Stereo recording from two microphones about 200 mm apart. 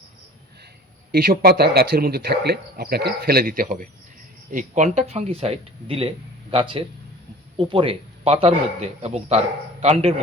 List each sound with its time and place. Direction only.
1.1 s a man's voice: 50° right (ahead or behind); by 10.2 s 30° right (ahead or behind)